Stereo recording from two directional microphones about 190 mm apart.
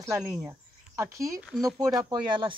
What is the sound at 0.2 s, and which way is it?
Speech, 5° right (ahead or behind).